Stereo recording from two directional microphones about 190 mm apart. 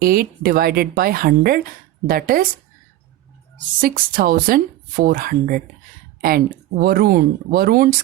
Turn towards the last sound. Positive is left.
turn(degrees=-50)  # may be behind; listen again after turning